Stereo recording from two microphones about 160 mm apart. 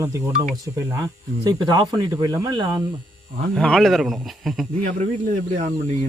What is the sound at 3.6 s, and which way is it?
Speech, 5° left (ahead or behind).